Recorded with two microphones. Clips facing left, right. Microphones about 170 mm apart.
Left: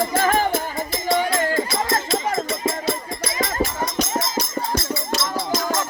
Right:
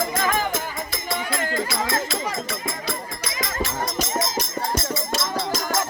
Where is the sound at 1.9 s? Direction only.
50° left (ahead or behind).